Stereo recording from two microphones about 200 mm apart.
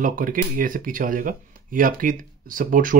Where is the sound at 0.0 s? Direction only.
45° right (ahead or behind).